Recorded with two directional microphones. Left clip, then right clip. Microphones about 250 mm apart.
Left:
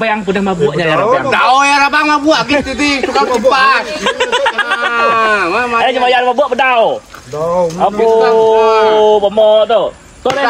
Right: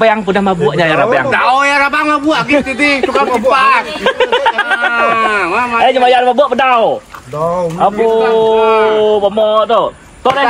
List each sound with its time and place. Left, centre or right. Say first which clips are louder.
0.0 s speech: right 4 dB; centre
1.3 s a man's voice: left 1 dB; left
4.0 s a sound: right 2 dB; right
4.9 s a man's voice: left 3 dB; centre
5.9 s a man's voice: right 4 dB; right
7.8 s a man's voice: even; right